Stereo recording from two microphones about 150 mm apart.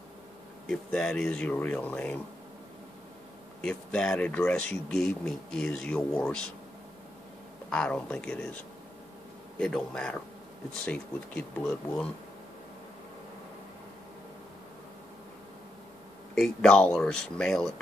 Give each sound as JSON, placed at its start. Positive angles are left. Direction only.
{"t": 0.7, "sound": "speech", "side_deg": 5}
{"t": 3.6, "sound": "speech", "side_deg": 5}
{"t": 7.7, "sound": "speech", "side_deg": 5}
{"t": 9.6, "sound": "speech", "side_deg": 5}
{"t": 16.3, "sound": "speech", "side_deg": 5}